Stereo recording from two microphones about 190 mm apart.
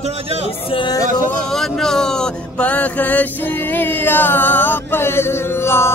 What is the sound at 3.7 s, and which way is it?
Chant, 10° left (ahead or behind).